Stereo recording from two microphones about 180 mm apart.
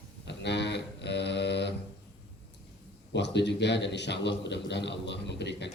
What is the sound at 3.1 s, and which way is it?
A man's voice, 75° left (ahead or behind).